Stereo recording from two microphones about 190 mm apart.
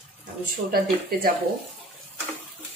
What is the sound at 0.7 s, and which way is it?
Speech, 50° right (ahead or behind).